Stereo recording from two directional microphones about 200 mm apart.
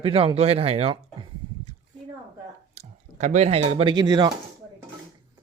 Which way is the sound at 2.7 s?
35° right (ahead or behind).